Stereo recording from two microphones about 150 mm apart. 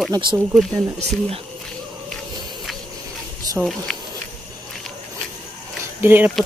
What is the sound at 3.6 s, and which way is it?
Speech, 5° right (ahead or behind).